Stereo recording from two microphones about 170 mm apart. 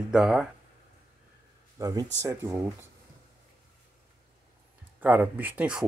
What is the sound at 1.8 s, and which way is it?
Speech, 20° right (ahead or behind).